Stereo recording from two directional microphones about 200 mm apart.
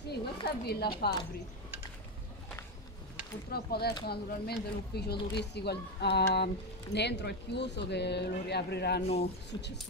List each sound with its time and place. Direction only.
0.1 s speech: 55° left (ahead or behind)
3.5 s speech: 50° left (ahead or behind)
9.0 s speech: 30° left (ahead or behind)
9.5 s speech: 60° left (ahead or behind)